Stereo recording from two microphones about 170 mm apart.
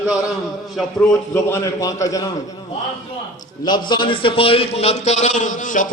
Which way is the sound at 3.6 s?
25° left (ahead or behind).